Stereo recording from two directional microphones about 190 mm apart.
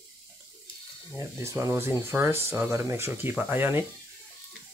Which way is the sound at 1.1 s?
15° right (ahead or behind).